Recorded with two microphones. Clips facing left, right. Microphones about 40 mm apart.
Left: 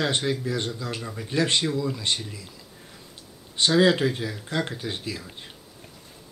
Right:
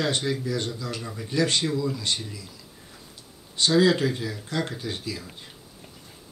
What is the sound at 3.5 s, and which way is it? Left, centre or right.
Speech, left.